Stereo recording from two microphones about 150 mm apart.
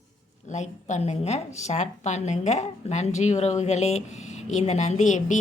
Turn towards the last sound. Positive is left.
turn(degrees=55)  # may be behind; listen again after turning